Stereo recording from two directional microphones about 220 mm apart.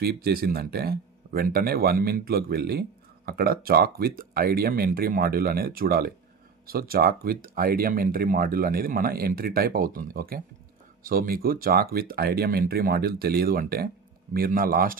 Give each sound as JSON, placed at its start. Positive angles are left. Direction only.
{"t": 0.0, "sound": "speech", "side_deg": -45}